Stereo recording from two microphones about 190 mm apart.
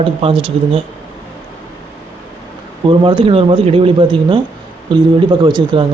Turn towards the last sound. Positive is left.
turn(degrees=-25)  # may be behind; listen again after turning